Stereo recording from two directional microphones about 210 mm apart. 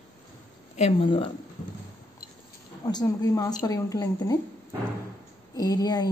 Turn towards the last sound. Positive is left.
turn(degrees=20)  # may be behind; listen again after turning